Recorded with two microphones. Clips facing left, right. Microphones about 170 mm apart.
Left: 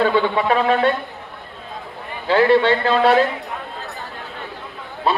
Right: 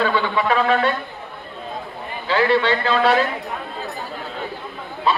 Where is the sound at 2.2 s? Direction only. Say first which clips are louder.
Left 4 dB; 55° left (ahead or behind).